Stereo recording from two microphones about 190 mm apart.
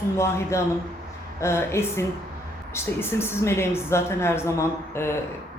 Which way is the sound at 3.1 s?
15° left (ahead or behind).